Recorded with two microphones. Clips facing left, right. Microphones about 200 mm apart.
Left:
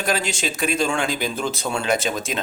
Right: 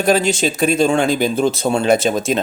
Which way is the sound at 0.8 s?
40° right (ahead or behind).